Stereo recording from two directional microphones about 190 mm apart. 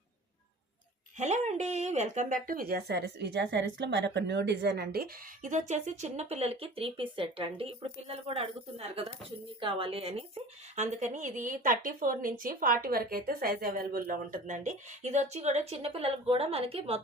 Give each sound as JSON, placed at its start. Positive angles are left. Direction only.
{"t": 1.2, "sound": "a woman's voice", "side_deg": -35}